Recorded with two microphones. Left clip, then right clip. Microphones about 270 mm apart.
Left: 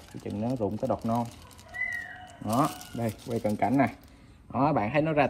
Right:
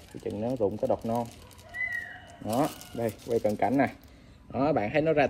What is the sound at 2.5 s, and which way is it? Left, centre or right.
Speech, left.